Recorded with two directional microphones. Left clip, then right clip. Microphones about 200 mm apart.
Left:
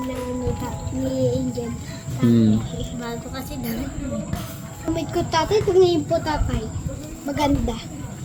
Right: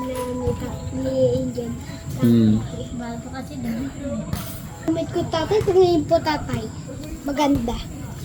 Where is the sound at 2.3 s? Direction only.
5° left (ahead or behind).